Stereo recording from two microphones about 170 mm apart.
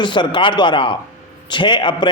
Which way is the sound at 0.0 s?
25° left (ahead or behind).